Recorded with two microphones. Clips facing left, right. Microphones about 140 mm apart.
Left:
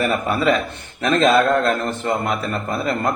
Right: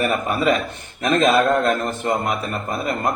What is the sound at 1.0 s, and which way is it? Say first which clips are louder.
A man's voice: left 1 dB; 15° right (ahead or behind).